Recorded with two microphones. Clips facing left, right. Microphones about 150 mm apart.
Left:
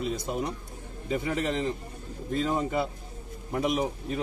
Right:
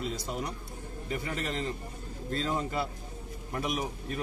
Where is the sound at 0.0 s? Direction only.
20° left (ahead or behind).